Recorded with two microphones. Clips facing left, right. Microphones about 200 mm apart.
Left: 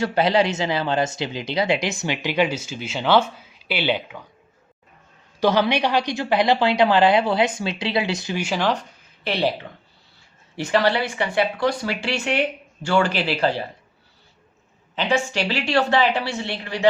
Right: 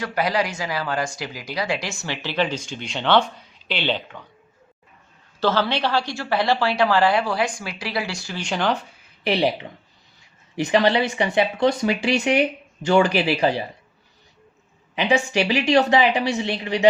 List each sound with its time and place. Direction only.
0.0 s speech: 25° left (ahead or behind); by 4.3 s 10° left (ahead or behind)
5.4 s speech: 15° left (ahead or behind)
8.4 s speech: centre (ahead or behind); by 9.6 s 15° right (ahead or behind)
10.6 s speech: 20° right (ahead or behind)
14.9 s speech: 15° right (ahead or behind)